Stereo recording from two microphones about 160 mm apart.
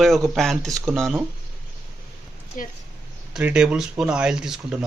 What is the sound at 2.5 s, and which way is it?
Speech, 55° left (ahead or behind).